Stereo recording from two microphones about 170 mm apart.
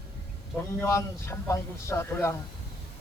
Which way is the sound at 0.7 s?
15° left (ahead or behind).